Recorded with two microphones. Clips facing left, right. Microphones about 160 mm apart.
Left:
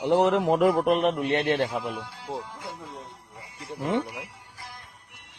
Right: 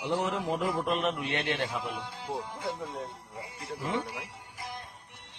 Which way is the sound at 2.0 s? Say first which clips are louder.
Left 1 dB; 20° right (ahead or behind).